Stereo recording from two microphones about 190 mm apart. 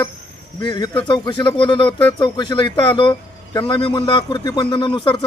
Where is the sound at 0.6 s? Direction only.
25° left (ahead or behind).